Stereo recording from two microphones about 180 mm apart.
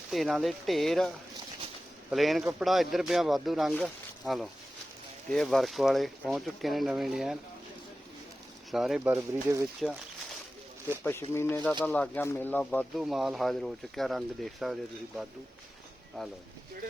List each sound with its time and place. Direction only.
0.1 s speech: centre (ahead or behind)
5.3 s speech: centre (ahead or behind)
8.7 s speech: centre (ahead or behind)
11.0 s speech: 15° left (ahead or behind)
13.0 s speech: centre (ahead or behind)